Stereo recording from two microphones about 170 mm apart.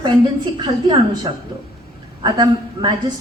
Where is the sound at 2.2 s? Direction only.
25° right (ahead or behind).